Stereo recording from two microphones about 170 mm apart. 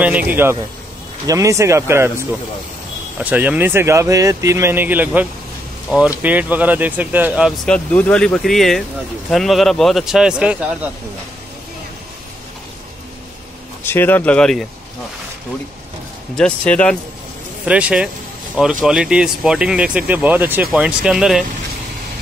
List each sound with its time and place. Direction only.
0.0 s speech: 10° right (ahead or behind)
7.6 s speech: 5° left (ahead or behind)
13.8 s speech: 10° left (ahead or behind)
16.3 s speech: 5° left (ahead or behind)
17.6 s speech: 5° right (ahead or behind)